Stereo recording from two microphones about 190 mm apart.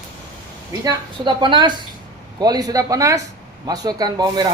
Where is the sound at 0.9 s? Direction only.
25° right (ahead or behind).